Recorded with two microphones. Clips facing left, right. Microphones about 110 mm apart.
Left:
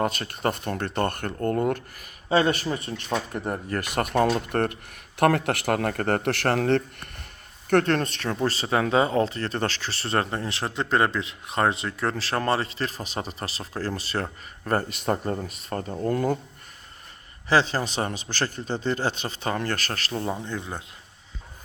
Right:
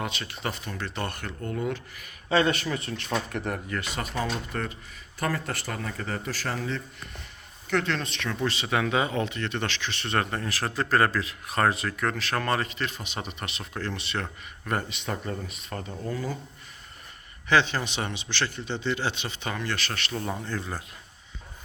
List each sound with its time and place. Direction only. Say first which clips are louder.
0.0 s speech: left 7 dB; 45° left (ahead or behind)
2.3 s speech: left 2 dB; 35° left (ahead or behind)
3.8 s speech: left 11 dB; 60° left (ahead or behind)
17.5 s speech: left 2 dB; 35° left (ahead or behind)
20.2 s speech: left 2 dB; 20° left (ahead or behind)